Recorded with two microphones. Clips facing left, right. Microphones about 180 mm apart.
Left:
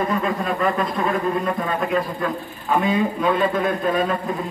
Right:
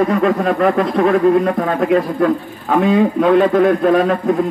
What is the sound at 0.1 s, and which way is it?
A man's voice, 75° right (ahead or behind).